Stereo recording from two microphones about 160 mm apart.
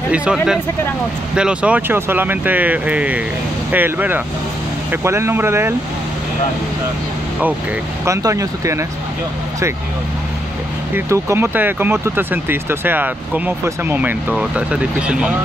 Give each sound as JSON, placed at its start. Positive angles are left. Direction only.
{"t": 0.1, "sound": "speech", "side_deg": -5}
{"t": 8.0, "sound": "speech", "side_deg": -20}
{"t": 11.0, "sound": "speech", "side_deg": -15}